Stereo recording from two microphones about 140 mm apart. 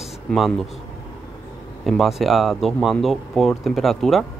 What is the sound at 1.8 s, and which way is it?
Speech, centre (ahead or behind).